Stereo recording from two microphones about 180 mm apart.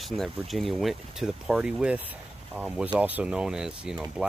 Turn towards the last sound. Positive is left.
turn(degrees=-5)  # may be behind; listen again after turning